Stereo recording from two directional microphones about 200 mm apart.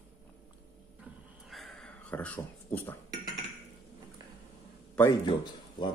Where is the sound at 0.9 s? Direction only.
Centre (ahead or behind).